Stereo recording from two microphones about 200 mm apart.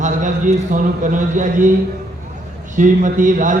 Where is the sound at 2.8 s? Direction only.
40° right (ahead or behind).